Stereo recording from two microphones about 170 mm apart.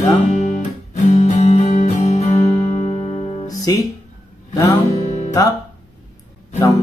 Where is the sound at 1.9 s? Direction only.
20° left (ahead or behind).